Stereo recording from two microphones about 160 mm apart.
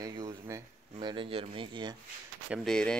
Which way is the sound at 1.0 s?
30° right (ahead or behind).